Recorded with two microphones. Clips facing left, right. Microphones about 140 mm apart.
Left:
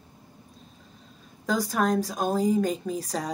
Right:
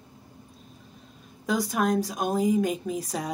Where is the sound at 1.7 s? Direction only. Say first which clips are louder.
Left 1 dB; centre (ahead or behind).